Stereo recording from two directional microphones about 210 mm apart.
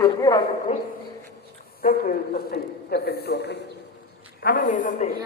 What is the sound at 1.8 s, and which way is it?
A man's voice, 40° left (ahead or behind).